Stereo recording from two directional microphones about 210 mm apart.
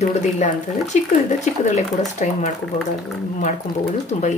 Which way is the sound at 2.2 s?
35° left (ahead or behind).